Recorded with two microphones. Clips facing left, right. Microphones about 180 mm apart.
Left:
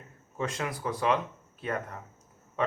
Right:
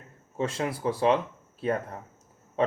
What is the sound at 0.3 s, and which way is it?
Speech, 30° right (ahead or behind).